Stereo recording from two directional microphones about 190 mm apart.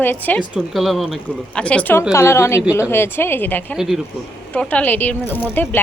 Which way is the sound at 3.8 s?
Centre (ahead or behind).